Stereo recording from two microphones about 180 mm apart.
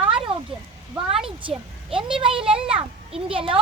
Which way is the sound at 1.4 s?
30° right (ahead or behind).